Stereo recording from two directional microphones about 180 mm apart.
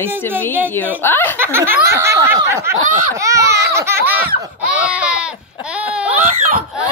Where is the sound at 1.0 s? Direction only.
10° left (ahead or behind).